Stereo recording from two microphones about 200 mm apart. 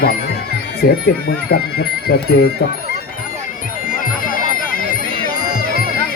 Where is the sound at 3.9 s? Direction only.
45° left (ahead or behind).